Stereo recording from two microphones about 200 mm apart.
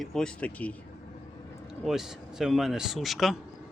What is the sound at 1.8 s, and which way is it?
Speech, centre (ahead or behind).